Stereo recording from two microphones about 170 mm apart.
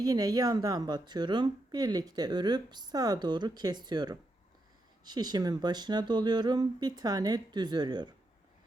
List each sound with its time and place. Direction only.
0.0 s a woman's voice: 20° right (ahead or behind)